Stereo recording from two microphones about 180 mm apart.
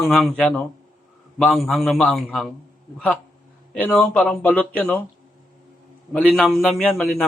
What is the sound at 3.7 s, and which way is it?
Speech, 10° left (ahead or behind).